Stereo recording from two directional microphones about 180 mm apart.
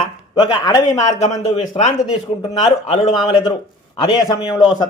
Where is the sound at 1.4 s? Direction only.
40° left (ahead or behind).